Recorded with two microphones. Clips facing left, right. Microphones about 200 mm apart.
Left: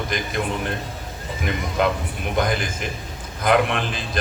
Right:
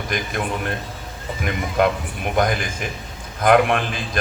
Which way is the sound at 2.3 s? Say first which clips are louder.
Right 2 dB; 50° right (ahead or behind).